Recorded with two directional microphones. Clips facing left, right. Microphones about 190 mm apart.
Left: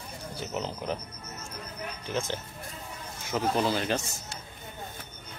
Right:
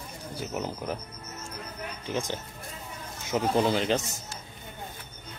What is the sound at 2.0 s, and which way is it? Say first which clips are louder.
Speech: right 1 dB; 15° right (ahead or behind).